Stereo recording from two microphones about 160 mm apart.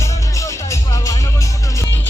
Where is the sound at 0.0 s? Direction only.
20° left (ahead or behind).